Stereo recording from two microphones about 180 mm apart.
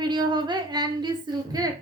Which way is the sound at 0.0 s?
25° right (ahead or behind).